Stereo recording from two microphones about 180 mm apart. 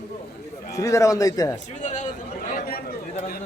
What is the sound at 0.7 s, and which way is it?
Speech, 20° left (ahead or behind).